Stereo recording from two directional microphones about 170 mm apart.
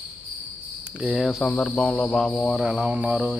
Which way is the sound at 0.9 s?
5° right (ahead or behind).